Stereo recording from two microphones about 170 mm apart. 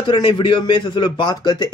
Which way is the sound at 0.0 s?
30° left (ahead or behind).